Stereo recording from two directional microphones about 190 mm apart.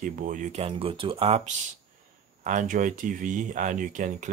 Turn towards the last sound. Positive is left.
turn(degrees=-40)  # may be behind; listen again after turning